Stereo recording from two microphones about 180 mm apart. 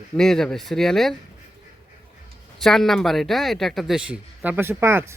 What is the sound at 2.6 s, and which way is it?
Speech, centre (ahead or behind).